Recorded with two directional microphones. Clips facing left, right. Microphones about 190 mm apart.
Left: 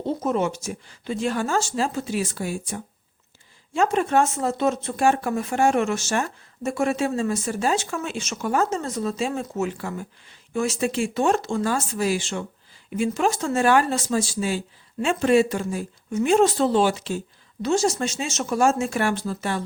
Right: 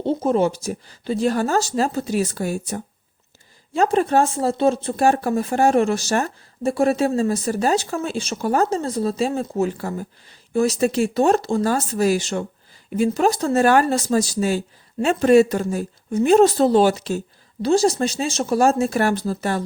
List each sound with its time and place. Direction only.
0.0 s speech: 30° right (ahead or behind)